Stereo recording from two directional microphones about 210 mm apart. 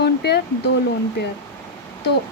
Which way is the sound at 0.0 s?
50° left (ahead or behind).